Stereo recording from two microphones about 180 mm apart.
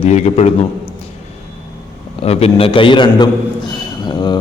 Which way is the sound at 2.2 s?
35° left (ahead or behind).